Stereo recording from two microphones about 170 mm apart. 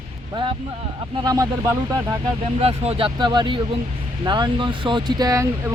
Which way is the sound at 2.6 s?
35° right (ahead or behind).